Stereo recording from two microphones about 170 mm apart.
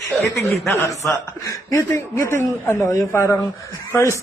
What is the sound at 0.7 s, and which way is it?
A man's voice, 15° left (ahead or behind).